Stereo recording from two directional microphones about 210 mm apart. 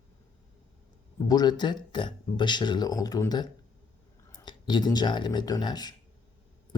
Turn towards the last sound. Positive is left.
turn(degrees=20)  # may be behind; listen again after turning